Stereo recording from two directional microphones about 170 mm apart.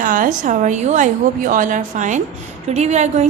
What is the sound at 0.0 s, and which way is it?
A woman's voice, 50° right (ahead or behind).